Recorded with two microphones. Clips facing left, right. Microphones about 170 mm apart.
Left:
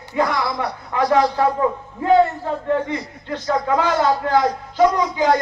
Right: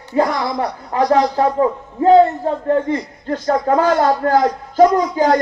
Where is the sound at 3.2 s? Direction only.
45° right (ahead or behind).